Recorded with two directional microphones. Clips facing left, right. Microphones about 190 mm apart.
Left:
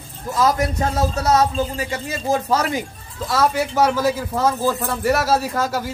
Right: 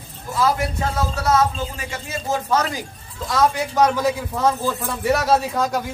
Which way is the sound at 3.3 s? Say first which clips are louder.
Even; 5° left (ahead or behind).